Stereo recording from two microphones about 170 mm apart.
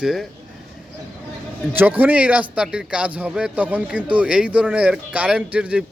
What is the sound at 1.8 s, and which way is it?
Speech, 10° right (ahead or behind).